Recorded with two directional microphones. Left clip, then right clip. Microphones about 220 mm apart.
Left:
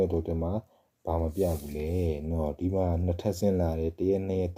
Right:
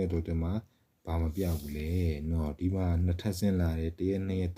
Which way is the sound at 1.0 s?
50° right (ahead or behind).